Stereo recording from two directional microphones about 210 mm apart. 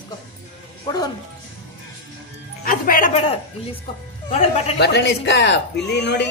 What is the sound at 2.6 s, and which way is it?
Music, 40° left (ahead or behind).